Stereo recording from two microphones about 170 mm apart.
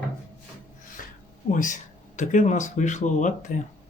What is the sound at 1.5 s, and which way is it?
Speech, 50° left (ahead or behind).